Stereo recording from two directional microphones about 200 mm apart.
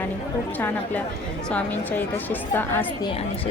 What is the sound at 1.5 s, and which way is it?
A woman's voice, 10° left (ahead or behind).